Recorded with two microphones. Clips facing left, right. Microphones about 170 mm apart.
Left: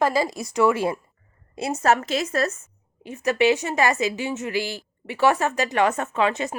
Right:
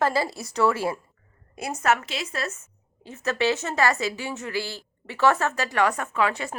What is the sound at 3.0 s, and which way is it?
A woman's voice, 15° left (ahead or behind).